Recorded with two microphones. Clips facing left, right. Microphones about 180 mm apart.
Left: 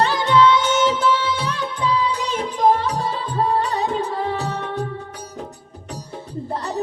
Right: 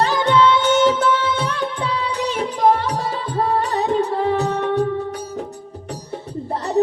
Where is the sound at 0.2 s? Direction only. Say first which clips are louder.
Even; 60° right (ahead or behind).